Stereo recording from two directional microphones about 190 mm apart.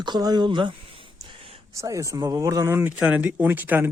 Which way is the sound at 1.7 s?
15° right (ahead or behind).